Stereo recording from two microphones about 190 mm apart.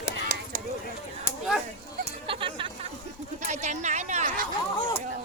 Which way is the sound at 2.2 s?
25° right (ahead or behind).